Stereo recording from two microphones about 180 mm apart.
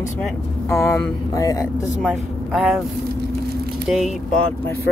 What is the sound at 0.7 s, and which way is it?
Speech, 15° left (ahead or behind).